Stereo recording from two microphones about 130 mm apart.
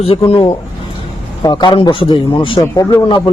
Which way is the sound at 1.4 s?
35° left (ahead or behind).